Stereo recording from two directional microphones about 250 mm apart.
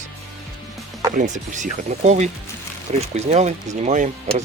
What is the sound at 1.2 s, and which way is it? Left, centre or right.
Speech, right.